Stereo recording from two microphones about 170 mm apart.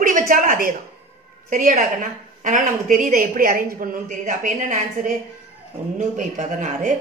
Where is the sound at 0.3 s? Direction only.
55° right (ahead or behind).